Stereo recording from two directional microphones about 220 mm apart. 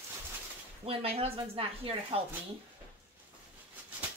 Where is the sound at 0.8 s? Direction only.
25° right (ahead or behind).